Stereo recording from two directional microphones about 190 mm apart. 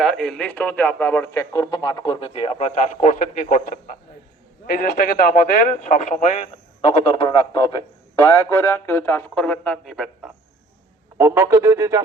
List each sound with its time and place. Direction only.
0.0 s a man's voice: centre (ahead or behind)
11.2 s speech: 15° right (ahead or behind)